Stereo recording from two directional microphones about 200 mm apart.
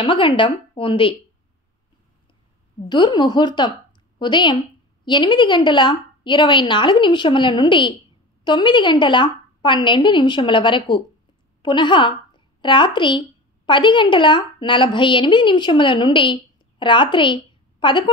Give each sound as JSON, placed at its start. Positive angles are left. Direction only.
{"t": 0.0, "sound": "a woman's voice", "side_deg": 25}
{"t": 2.9, "sound": "a woman's voice", "side_deg": 20}